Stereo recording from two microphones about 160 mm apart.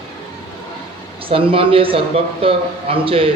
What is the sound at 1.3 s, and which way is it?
A man's voice, 35° right (ahead or behind).